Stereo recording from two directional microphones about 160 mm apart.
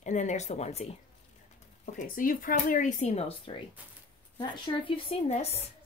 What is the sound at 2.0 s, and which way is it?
Speech, 60° left (ahead or behind).